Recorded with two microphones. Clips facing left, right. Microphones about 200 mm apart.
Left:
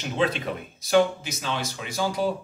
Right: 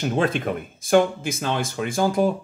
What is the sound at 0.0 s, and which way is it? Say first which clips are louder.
Speech: right 4 dB; 50° right (ahead or behind).